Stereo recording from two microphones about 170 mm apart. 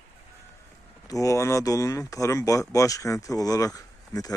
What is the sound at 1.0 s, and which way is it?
Speech, 20° left (ahead or behind).